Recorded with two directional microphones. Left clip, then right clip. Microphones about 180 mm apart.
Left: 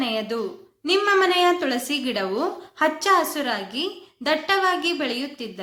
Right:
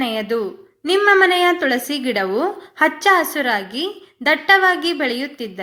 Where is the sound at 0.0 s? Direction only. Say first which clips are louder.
Right 5 dB; 25° right (ahead or behind).